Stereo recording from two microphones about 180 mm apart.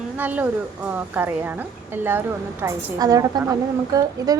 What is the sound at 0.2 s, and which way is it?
A woman's voice, 10° right (ahead or behind).